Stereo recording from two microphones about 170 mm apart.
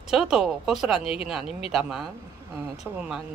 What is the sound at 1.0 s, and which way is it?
Speech, 35° left (ahead or behind).